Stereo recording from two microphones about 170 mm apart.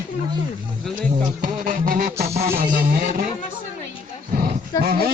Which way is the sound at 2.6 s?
60° right (ahead or behind).